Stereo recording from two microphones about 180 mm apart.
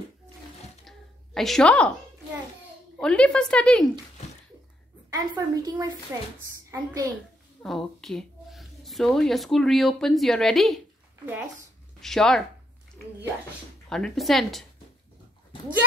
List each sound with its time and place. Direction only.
0.8 s a sound: centre (ahead or behind)
3.0 s a woman's voice: 5° left (ahead or behind)
5.1 s a woman's voice: 20° right (ahead or behind)
7.6 s a woman's voice: centre (ahead or behind)
12.0 s a woman's voice: centre (ahead or behind)
13.8 s a woman's voice: centre (ahead or behind)